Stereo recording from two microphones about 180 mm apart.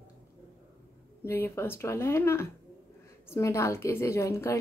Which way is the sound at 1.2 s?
15° left (ahead or behind).